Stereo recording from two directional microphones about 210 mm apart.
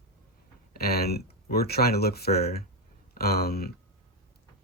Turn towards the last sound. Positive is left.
turn(degrees=45)  # may be behind; listen again after turning